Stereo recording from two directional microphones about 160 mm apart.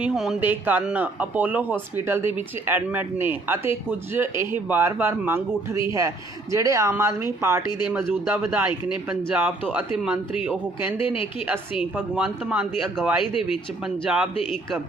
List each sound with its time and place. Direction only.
0.0 s speech: 5° right (ahead or behind)